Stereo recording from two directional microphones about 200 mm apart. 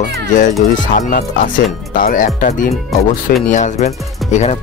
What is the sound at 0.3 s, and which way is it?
Speech, 40° left (ahead or behind).